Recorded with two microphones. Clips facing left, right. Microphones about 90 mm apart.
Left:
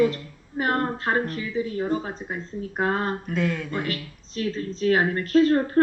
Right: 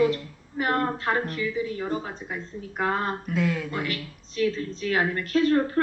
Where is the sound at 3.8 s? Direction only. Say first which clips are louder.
Left 1 dB; 35° left (ahead or behind).